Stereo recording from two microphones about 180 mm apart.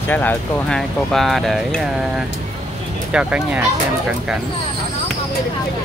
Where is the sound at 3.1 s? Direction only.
5° right (ahead or behind).